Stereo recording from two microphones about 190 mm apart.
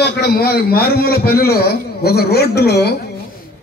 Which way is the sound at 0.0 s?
55° left (ahead or behind).